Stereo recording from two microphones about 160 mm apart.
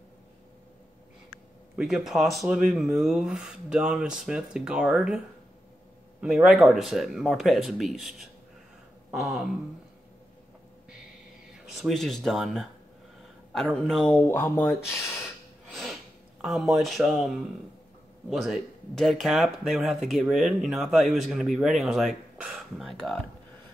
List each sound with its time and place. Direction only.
1.8 s speech: centre (ahead or behind)
6.2 s speech: centre (ahead or behind)
11.6 s speech: centre (ahead or behind)
14.2 s speech: 15° left (ahead or behind)
15.7 s a sound: centre (ahead or behind)
18.3 s speech: centre (ahead or behind)